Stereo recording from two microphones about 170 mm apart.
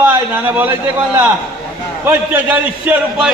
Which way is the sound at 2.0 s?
10° right (ahead or behind).